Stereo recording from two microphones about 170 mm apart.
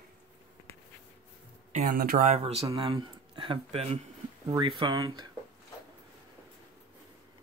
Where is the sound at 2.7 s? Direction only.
25° right (ahead or behind).